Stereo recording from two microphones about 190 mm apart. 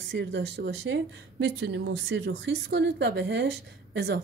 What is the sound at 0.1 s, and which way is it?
A woman's voice, 65° right (ahead or behind).